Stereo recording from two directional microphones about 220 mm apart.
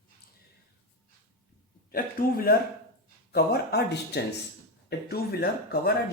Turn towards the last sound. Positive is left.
turn(degrees=45)  # may be behind; listen again after turning